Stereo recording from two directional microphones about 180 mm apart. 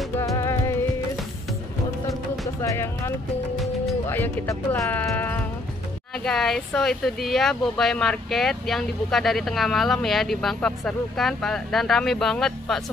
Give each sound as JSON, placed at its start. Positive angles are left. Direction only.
{"t": 0.2, "sound": "music", "side_deg": 15}
{"t": 2.4, "sound": "music", "side_deg": 20}
{"t": 4.1, "sound": "speech", "side_deg": 15}